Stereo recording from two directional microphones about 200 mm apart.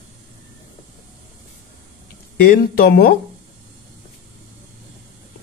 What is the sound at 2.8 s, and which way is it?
Speech, 50° left (ahead or behind).